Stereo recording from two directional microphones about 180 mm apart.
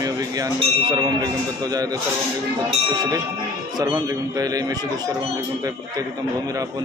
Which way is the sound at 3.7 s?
20° right (ahead or behind).